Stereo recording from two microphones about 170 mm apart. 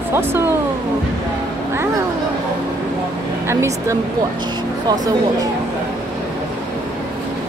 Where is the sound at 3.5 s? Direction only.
15° right (ahead or behind).